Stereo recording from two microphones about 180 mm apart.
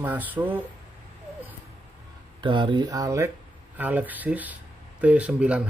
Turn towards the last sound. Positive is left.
turn(degrees=-5)  # may be behind; listen again after turning